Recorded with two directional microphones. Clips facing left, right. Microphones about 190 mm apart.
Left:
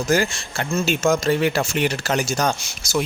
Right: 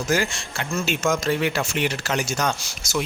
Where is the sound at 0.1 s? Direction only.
35° left (ahead or behind).